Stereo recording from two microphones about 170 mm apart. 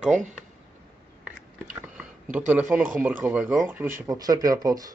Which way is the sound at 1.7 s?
5° right (ahead or behind).